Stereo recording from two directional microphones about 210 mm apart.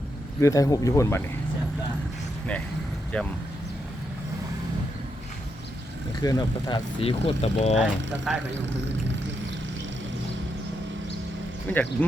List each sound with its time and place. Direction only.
0.3 s speech: 15° left (ahead or behind)
3.1 s speech: 5° left (ahead or behind)
6.2 s speech: 20° left (ahead or behind)
8.3 s speech: centre (ahead or behind)
11.7 s speech: 10° left (ahead or behind)